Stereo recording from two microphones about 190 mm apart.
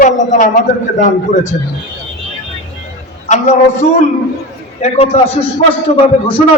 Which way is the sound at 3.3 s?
35° left (ahead or behind).